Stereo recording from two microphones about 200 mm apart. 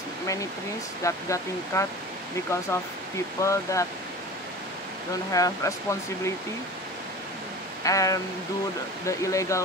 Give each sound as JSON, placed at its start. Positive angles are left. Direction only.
{"t": 1.0, "sound": "speech", "side_deg": 15}
{"t": 5.3, "sound": "speech", "side_deg": 15}
{"t": 7.8, "sound": "speech", "side_deg": 15}